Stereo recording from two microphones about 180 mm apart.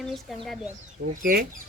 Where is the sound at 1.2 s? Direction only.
55° right (ahead or behind).